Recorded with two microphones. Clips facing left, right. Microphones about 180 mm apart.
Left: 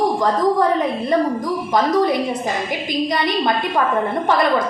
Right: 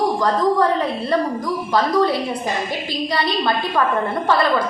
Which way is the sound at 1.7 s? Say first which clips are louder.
Left 1 dB; 20° left (ahead or behind).